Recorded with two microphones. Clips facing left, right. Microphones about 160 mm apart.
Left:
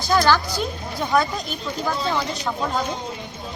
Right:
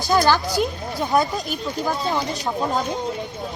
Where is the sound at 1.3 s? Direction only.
Centre (ahead or behind).